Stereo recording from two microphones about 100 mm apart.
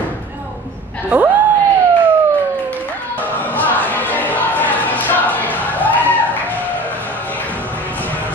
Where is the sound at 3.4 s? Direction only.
15° left (ahead or behind).